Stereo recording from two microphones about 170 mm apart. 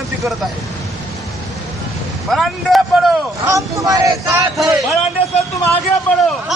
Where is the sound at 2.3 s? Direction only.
Centre (ahead or behind).